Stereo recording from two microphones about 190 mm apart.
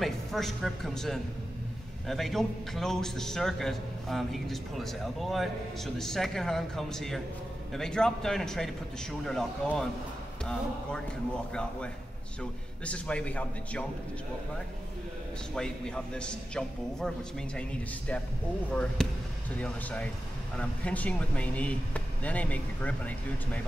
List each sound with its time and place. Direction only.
0.0 s a man's voice: centre (ahead or behind)
12.4 s speech: 5° left (ahead or behind)
15.5 s a man's voice: 5° left (ahead or behind)